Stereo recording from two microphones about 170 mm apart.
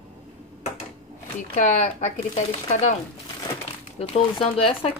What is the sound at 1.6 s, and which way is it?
Speech, 45° left (ahead or behind).